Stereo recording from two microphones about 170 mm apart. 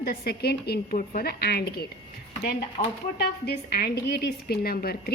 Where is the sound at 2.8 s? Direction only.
50° left (ahead or behind).